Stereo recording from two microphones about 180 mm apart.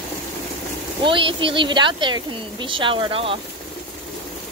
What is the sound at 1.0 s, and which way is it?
Speech, 30° right (ahead or behind).